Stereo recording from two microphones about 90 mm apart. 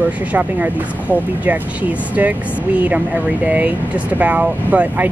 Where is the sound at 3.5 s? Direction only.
15° right (ahead or behind).